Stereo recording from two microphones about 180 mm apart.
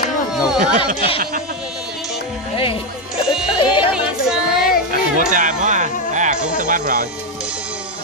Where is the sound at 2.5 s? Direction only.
30° left (ahead or behind).